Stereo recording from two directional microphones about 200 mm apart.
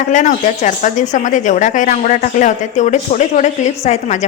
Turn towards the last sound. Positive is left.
turn(degrees=35)  # may be behind; listen again after turning